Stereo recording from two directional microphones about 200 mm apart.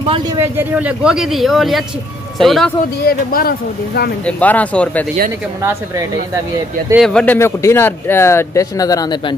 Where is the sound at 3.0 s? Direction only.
45° left (ahead or behind).